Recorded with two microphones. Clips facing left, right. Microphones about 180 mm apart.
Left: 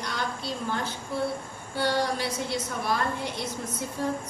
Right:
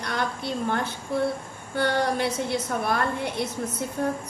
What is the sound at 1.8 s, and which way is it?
A woman's voice, 55° right (ahead or behind).